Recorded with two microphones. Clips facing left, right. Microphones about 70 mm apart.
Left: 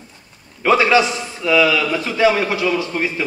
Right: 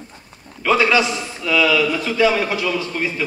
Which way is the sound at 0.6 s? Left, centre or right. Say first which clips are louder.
Left 2 dB; left.